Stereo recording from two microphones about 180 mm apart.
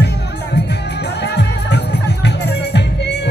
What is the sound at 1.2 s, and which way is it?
Music, 70° left (ahead or behind).